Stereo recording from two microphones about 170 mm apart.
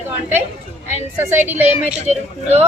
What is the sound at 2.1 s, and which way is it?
Speech, 40° right (ahead or behind).